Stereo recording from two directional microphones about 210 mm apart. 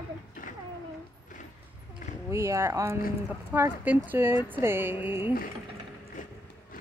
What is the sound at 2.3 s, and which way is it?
Speech, 15° right (ahead or behind).